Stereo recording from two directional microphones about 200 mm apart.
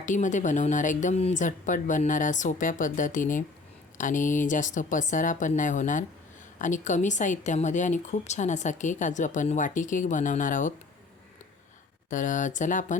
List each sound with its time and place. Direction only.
0.0 s a woman's voice: 40° left (ahead or behind)
12.1 s a woman's voice: 40° left (ahead or behind)